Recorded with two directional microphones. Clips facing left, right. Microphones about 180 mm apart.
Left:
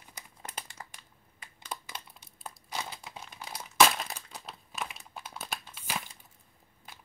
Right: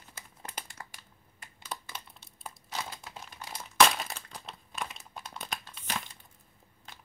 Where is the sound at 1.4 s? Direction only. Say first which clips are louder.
Even; 10° left (ahead or behind).